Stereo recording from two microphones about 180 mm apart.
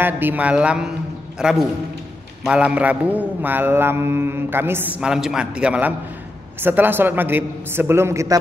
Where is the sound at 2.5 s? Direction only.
5° right (ahead or behind).